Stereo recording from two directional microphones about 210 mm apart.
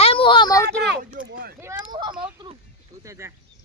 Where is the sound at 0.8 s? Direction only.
50° right (ahead or behind).